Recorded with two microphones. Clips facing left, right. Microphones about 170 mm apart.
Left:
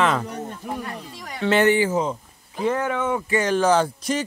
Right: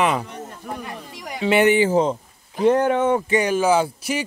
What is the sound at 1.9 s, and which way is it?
Speech, 30° right (ahead or behind).